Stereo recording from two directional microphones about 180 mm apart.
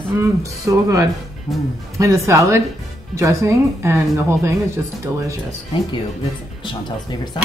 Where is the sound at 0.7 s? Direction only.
20° right (ahead or behind).